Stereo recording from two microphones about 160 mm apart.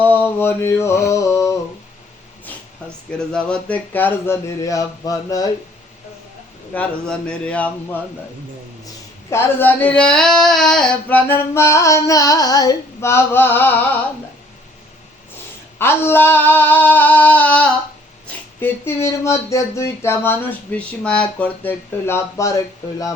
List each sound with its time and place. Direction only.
0.0 s mantra: 10° left (ahead or behind)
3.1 s speech: 5° left (ahead or behind); by 5.5 s 20° left (ahead or behind)
6.7 s speech: 5° left (ahead or behind)
9.3 s speech: 15° left (ahead or behind)
15.8 s speech: 15° left (ahead or behind)